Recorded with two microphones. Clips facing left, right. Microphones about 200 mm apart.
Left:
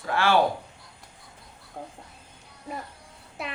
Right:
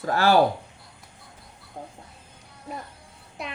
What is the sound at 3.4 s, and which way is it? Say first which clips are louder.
Speech: even; centre (ahead or behind).